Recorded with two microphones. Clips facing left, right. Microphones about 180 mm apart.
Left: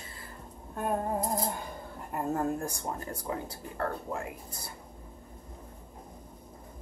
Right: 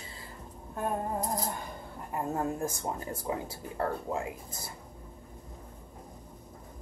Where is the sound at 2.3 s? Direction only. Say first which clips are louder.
Left 2 dB; 20° right (ahead or behind).